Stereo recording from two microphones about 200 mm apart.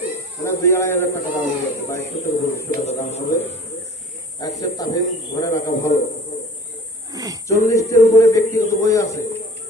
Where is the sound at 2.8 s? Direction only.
35° left (ahead or behind).